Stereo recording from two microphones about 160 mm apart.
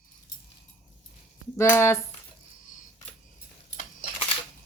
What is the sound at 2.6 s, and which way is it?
Coin, 50° left (ahead or behind).